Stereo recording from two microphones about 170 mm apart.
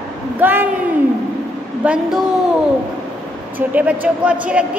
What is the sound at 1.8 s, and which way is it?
Speech, 10° right (ahead or behind).